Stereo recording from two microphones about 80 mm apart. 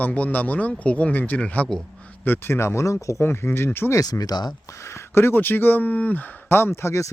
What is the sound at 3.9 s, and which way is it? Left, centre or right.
Speech, left.